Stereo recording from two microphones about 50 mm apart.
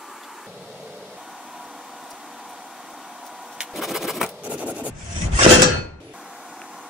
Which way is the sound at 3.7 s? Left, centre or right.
Centre.